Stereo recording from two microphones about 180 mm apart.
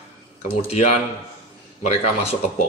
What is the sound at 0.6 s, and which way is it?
Speech, 40° left (ahead or behind).